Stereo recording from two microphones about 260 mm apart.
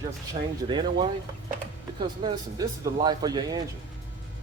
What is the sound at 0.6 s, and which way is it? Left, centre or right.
Speech, centre.